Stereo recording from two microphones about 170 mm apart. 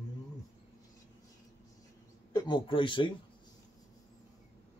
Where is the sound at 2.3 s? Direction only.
25° left (ahead or behind).